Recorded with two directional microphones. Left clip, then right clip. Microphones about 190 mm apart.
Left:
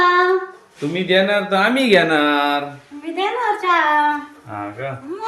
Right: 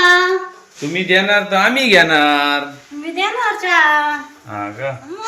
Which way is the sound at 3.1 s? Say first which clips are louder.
Right 2 dB; 30° left (ahead or behind).